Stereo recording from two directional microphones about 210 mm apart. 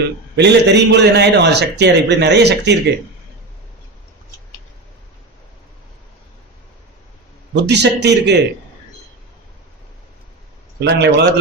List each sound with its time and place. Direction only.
0.3 s a man's voice: 55° right (ahead or behind)
7.5 s a man's voice: 55° right (ahead or behind)
10.8 s a man's voice: 55° right (ahead or behind)